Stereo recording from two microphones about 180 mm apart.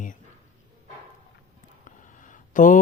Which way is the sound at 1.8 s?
45° left (ahead or behind).